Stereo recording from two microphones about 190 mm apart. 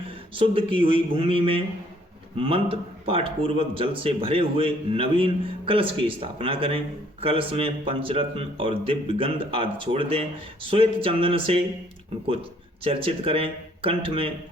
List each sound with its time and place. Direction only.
0.3 s speech: 30° right (ahead or behind)